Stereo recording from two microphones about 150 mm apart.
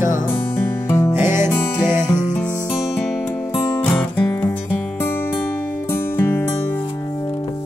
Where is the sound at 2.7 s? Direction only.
5° right (ahead or behind).